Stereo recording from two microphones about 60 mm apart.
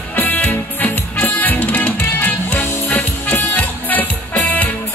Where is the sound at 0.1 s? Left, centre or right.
Left.